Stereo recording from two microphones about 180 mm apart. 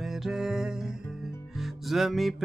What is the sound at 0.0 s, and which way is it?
Music, centre (ahead or behind).